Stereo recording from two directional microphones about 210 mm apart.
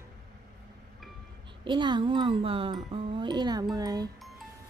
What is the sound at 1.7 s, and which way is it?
Speech, 20° right (ahead or behind).